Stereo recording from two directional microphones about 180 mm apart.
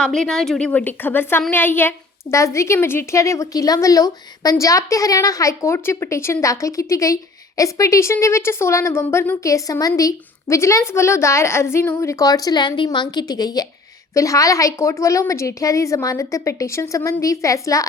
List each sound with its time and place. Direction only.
0.0 s a woman's voice: 5° left (ahead or behind)